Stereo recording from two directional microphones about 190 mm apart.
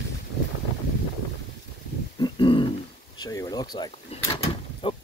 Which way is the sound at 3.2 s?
20° left (ahead or behind).